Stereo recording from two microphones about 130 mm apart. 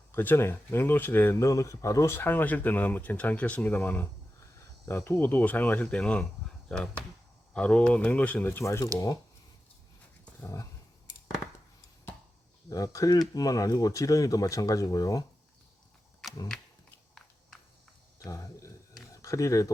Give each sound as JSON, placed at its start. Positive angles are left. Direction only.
{"t": 0.1, "sound": "speech", "side_deg": 15}
{"t": 10.4, "sound": "speech", "side_deg": 25}
{"t": 12.7, "sound": "speech", "side_deg": 25}
{"t": 18.2, "sound": "speech", "side_deg": 25}